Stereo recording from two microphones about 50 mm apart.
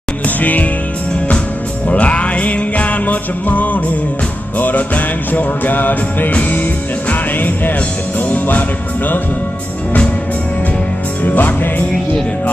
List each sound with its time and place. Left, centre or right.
0.4 s music: left
1.9 s music: left
11.2 s music: left